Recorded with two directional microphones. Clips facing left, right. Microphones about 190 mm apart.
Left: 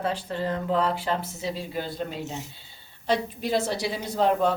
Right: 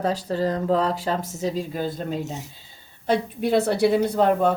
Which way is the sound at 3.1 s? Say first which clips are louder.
Right 4 dB; 60° right (ahead or behind).